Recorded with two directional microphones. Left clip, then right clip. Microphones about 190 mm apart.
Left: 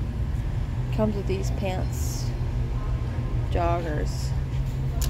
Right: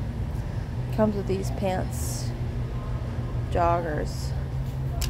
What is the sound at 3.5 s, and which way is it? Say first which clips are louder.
Speech: right 3 dB; centre (ahead or behind).